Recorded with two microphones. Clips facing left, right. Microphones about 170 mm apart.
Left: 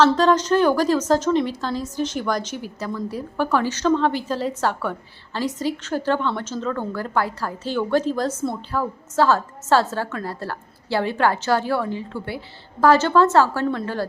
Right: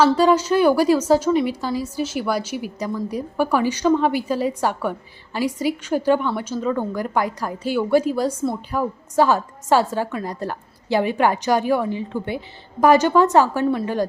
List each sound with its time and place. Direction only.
0.0 s a woman's voice: 10° right (ahead or behind)